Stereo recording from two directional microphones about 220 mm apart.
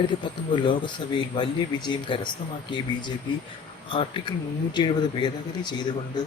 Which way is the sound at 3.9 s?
25° left (ahead or behind).